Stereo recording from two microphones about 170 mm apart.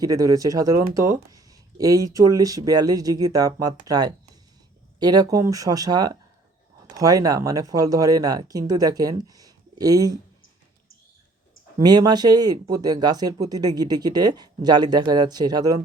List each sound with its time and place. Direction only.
0.0 s speech: 20° right (ahead or behind)
11.8 s speech: 25° right (ahead or behind)